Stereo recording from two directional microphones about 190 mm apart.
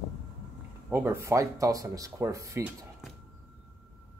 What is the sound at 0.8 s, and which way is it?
Speech, 10° right (ahead or behind).